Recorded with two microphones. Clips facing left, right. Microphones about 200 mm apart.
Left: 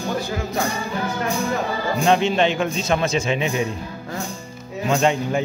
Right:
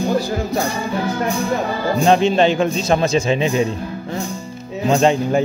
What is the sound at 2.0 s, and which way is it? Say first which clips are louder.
A man's voice: right 4 dB; 35° right (ahead or behind).